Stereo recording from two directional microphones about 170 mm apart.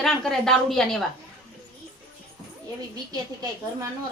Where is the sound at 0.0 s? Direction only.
Centre (ahead or behind).